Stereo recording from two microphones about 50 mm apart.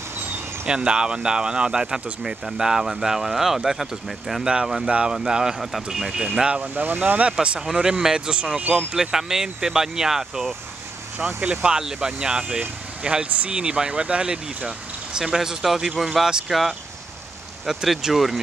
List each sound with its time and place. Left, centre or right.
0.7 s speech: centre
4.8 s speech: right
6.6 s speech: right
7.6 s speech: centre
11.4 s speech: right
11.7 s speech: centre